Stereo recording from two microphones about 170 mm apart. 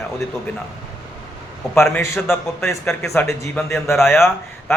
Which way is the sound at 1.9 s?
15° left (ahead or behind).